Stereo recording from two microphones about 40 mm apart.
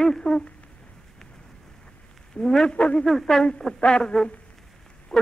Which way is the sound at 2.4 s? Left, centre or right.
Centre.